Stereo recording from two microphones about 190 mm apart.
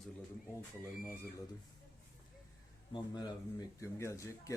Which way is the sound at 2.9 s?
20° left (ahead or behind).